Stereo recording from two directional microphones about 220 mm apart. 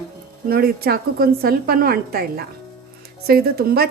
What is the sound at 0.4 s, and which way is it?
A woman's voice, 45° right (ahead or behind).